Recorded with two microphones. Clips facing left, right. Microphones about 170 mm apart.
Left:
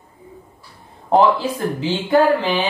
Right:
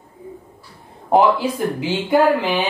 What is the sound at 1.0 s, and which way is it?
Speech, 10° right (ahead or behind).